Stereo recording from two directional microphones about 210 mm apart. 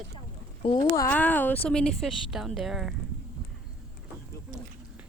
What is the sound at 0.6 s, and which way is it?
A woman's voice, 20° left (ahead or behind).